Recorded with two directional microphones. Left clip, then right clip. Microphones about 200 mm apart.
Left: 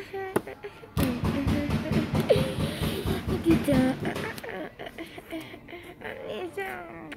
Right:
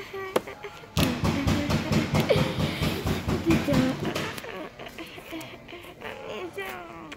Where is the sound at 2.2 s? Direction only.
20° left (ahead or behind).